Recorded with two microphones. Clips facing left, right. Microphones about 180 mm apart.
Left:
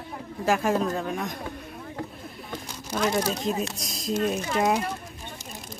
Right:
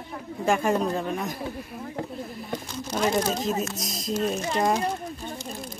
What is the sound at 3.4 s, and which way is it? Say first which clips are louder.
Speech: right 1 dB; centre (ahead or behind).